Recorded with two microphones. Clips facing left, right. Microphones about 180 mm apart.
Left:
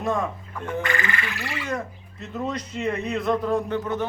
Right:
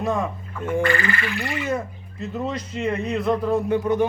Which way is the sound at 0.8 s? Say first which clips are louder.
Right 6 dB; 20° left (ahead or behind).